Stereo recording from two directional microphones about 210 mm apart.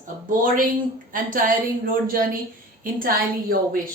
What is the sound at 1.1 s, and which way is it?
A woman's voice, 40° right (ahead or behind).